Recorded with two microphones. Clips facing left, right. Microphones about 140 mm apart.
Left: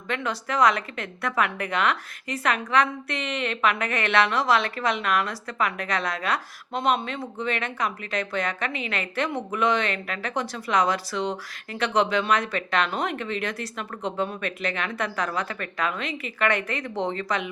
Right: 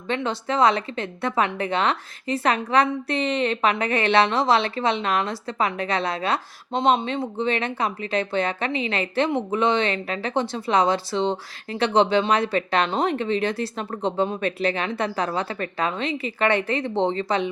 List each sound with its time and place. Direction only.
0.1 s a woman's voice: 25° right (ahead or behind)